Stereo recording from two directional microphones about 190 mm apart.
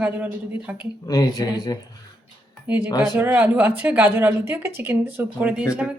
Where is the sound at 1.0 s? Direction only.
20° left (ahead or behind).